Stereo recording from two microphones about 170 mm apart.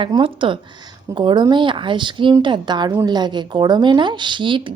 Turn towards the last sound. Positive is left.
turn(degrees=-30)  # may be behind; listen again after turning